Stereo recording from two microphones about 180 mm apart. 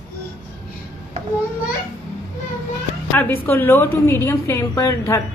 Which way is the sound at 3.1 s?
10° left (ahead or behind).